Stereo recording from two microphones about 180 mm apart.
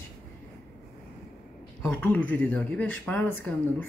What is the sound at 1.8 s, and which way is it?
A man's voice, 10° left (ahead or behind).